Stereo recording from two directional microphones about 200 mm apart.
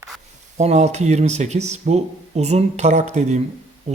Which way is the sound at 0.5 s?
35° right (ahead or behind).